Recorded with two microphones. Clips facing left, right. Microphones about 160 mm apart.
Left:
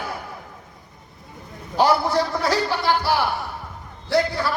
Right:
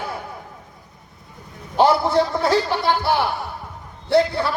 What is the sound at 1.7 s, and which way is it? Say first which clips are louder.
A man's voice: right 3 dB; 25° right (ahead or behind).